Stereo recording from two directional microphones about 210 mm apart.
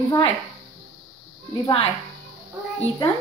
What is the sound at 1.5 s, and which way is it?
Speech, 25° left (ahead or behind).